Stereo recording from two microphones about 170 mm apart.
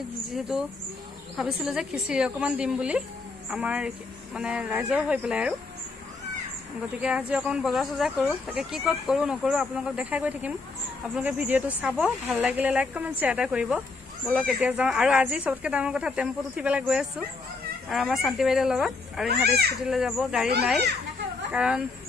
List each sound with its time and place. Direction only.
0.3 s speech: centre (ahead or behind)
7.0 s speech: 5° right (ahead or behind)
19.2 s a child's voice: 70° right (ahead or behind)
19.9 s speech: centre (ahead or behind)
21.5 s speech: 5° right (ahead or behind)